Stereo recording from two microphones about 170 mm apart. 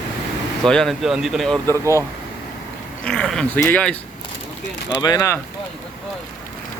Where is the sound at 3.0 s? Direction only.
5° left (ahead or behind).